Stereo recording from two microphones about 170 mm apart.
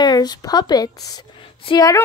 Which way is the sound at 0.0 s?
25° left (ahead or behind).